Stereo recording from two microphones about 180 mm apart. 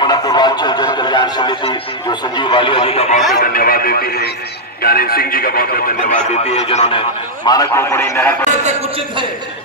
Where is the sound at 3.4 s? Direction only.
55° left (ahead or behind).